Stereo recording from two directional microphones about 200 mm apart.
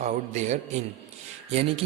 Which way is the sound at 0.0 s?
35° right (ahead or behind).